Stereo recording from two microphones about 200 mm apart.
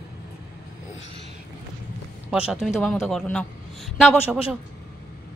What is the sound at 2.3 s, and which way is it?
A woman's voice, 5° right (ahead or behind).